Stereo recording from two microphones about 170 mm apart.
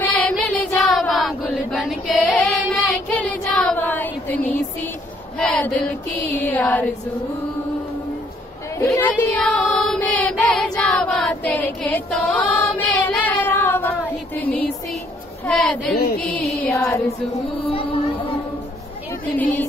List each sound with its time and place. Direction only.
0.0 s a sound: 10° left (ahead or behind)
2.3 s child singing: 5° left (ahead or behind)
5.4 s a sound: 5° left (ahead or behind)
6.3 s speech: 10° left (ahead or behind)
8.8 s child singing: 10° left (ahead or behind)
14.4 s a sound: 10° left (ahead or behind)
15.4 s a woman's voice: 5° left (ahead or behind)
17.6 s speech: 30° left (ahead or behind)
19.2 s speech: 10° left (ahead or behind)